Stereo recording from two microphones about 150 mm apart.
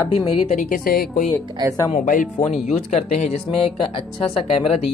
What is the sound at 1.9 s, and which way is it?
Speech, 60° left (ahead or behind).